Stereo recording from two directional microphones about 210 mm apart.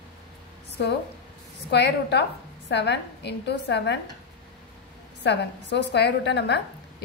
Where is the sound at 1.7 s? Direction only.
55° left (ahead or behind).